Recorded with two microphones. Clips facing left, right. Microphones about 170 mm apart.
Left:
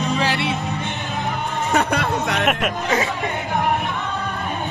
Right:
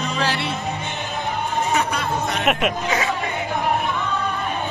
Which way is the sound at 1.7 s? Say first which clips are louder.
Left 3 dB; 65° left (ahead or behind).